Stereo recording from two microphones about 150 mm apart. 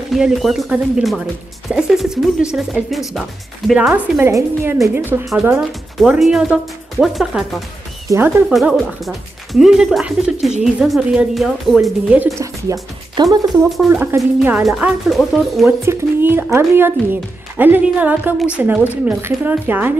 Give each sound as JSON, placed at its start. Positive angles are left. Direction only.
{"t": 0.1, "sound": "speech", "side_deg": 0}
{"t": 4.2, "sound": "a woman's voice", "side_deg": -20}
{"t": 5.3, "sound": "speech", "side_deg": -5}
{"t": 8.1, "sound": "a woman's voice", "side_deg": -20}
{"t": 8.5, "sound": "speech", "side_deg": -5}
{"t": 13.1, "sound": "a woman's voice", "side_deg": -25}
{"t": 14.1, "sound": "speech", "side_deg": -10}
{"t": 15.8, "sound": "speech", "side_deg": -15}